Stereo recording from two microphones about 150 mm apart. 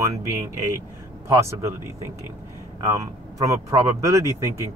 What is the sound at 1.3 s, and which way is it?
Speech, 20° right (ahead or behind).